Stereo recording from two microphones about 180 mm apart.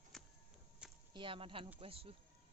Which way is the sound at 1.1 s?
30° right (ahead or behind).